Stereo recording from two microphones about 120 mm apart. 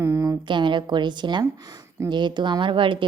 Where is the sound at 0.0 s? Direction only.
25° right (ahead or behind).